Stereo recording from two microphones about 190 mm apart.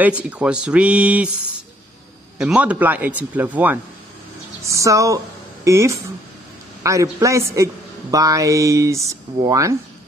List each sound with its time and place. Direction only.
0.0 s a man's voice: 5° right (ahead or behind)
2.3 s a man's voice: 5° right (ahead or behind)